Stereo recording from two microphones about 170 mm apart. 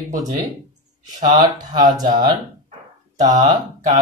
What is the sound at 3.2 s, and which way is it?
Speech, 25° right (ahead or behind).